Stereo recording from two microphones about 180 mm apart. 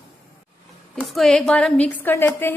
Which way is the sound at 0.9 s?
Centre (ahead or behind).